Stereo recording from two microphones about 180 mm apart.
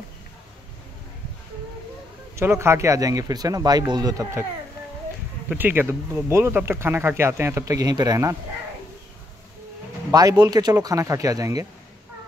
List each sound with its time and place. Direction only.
2.3 s speech: 15° right (ahead or behind)
5.5 s speech: 10° right (ahead or behind)
10.1 s speech: 20° right (ahead or behind)